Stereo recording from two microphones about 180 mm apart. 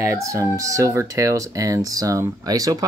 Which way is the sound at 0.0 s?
15° right (ahead or behind).